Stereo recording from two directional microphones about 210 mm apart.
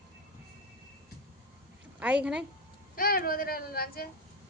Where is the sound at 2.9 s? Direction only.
45° left (ahead or behind).